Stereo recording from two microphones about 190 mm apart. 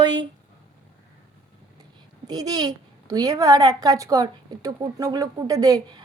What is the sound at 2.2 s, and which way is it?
A woman's voice, 20° right (ahead or behind).